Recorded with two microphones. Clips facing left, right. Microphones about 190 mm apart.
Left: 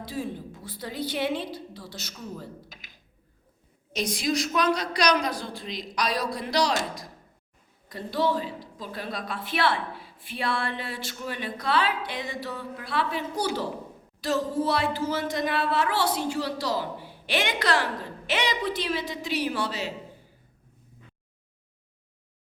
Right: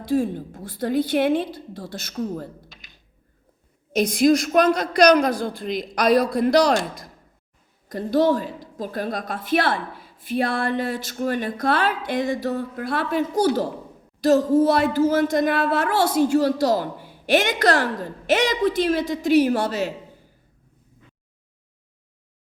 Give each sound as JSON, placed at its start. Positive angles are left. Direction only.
{"t": 0.0, "sound": "a woman's voice", "side_deg": -50}
{"t": 3.9, "sound": "a woman's voice", "side_deg": -50}
{"t": 7.9, "sound": "a woman's voice", "side_deg": -45}